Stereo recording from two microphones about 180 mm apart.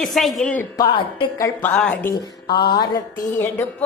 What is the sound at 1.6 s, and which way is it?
Music, 5° left (ahead or behind).